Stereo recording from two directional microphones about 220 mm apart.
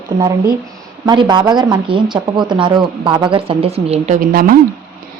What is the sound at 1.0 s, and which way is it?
Speech, 20° right (ahead or behind).